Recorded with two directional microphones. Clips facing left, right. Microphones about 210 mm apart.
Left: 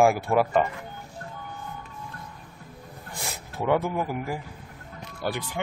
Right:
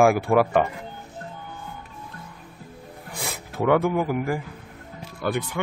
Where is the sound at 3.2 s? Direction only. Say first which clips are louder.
Right 5 dB; 60° right (ahead or behind).